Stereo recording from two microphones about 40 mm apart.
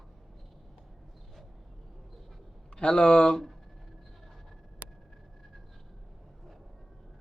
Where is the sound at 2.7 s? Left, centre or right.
Left.